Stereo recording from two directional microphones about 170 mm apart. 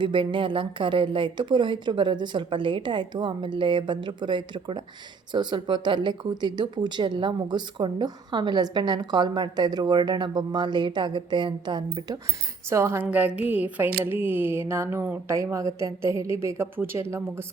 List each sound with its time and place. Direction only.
0.0 s speech: 30° right (ahead or behind)
12.7 s a woman's voice: 15° right (ahead or behind)